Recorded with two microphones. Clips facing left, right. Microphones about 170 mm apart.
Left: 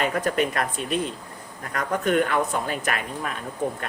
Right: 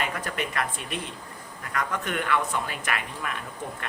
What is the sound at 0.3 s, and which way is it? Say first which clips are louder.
Speech: left 6 dB; 40° left (ahead or behind).